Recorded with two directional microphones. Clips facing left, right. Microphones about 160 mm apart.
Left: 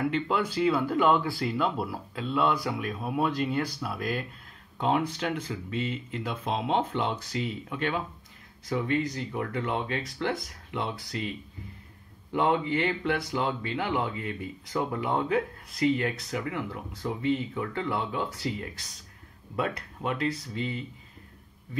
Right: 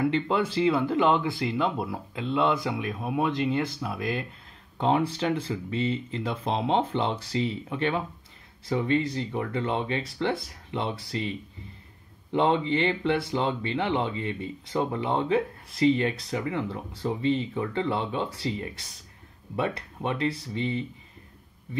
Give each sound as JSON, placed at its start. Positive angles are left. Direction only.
{"t": 0.0, "sound": "speech", "side_deg": -25}